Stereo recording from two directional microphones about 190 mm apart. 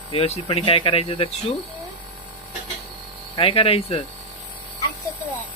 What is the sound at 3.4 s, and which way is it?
Speech, 30° left (ahead or behind).